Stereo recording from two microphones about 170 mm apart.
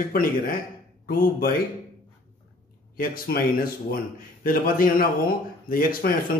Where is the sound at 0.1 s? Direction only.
55° left (ahead or behind).